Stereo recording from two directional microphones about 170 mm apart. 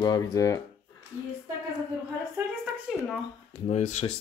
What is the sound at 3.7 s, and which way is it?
Speech, 40° left (ahead or behind).